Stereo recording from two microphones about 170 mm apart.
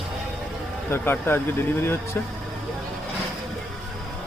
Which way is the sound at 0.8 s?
15° left (ahead or behind).